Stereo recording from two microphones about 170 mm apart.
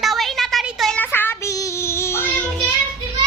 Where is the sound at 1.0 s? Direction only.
10° left (ahead or behind).